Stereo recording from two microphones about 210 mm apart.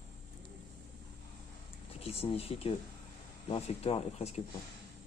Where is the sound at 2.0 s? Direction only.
30° left (ahead or behind).